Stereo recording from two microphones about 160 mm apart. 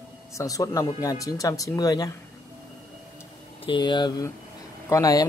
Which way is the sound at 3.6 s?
30° left (ahead or behind).